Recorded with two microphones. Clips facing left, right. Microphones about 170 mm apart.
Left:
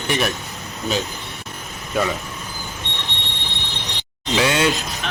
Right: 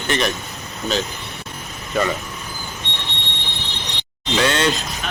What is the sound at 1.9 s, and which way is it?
Speech, centre (ahead or behind).